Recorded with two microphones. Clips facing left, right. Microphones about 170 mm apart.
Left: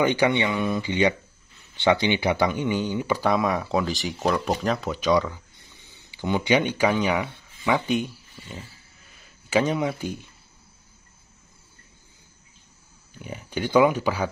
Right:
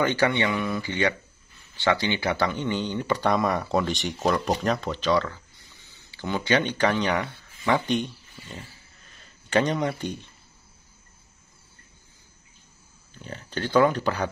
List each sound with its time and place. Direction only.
0.0 s speech: 15° left (ahead or behind)
13.1 s speech: 10° left (ahead or behind)